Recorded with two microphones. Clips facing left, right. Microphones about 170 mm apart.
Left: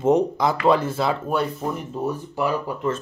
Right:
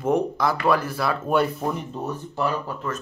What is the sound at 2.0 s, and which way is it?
Speech, 10° left (ahead or behind).